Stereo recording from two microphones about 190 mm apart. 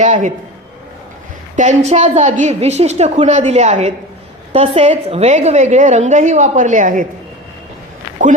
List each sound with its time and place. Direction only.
0.0 s a woman's voice: 40° right (ahead or behind)
1.5 s a woman's voice: 35° right (ahead or behind)